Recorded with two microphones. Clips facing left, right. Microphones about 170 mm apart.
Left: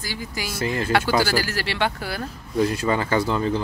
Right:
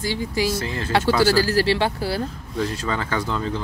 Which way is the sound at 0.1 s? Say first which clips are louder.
Right 8 dB; 30° right (ahead or behind).